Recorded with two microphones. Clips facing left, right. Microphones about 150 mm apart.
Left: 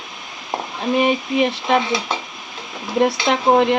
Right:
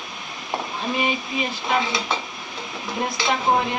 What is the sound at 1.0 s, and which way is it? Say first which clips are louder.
Speech: left 10 dB; 60° left (ahead or behind).